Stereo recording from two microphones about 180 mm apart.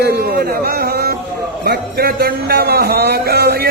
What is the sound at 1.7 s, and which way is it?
Speech, 60° right (ahead or behind).